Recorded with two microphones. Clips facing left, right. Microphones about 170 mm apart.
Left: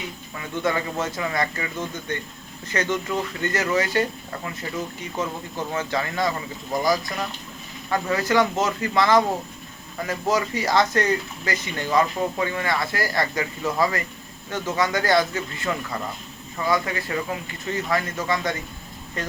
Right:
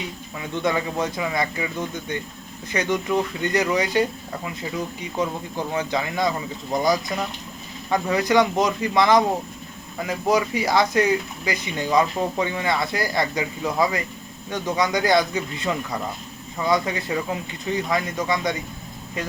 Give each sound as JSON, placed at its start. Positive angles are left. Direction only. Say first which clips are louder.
{"t": 0.3, "sound": "speech", "louder": "right 1 dB", "side_deg": -15}
{"t": 7.9, "sound": "speech", "louder": "right 2 dB", "side_deg": -15}